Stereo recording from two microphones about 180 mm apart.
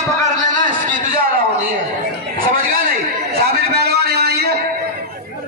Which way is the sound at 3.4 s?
65° right (ahead or behind).